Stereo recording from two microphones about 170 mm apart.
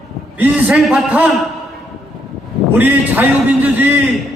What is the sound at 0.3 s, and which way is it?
Speech, 5° right (ahead or behind).